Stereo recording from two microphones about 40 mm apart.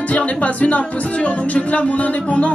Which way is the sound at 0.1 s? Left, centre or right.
Left.